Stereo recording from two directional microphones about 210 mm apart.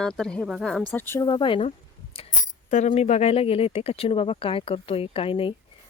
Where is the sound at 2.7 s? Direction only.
35° left (ahead or behind).